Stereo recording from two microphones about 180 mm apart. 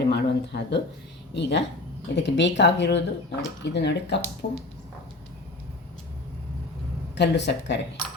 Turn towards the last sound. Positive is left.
turn(degrees=75)  # may be behind; listen again after turning